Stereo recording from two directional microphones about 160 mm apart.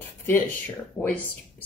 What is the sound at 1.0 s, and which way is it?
Speech, 15° left (ahead or behind).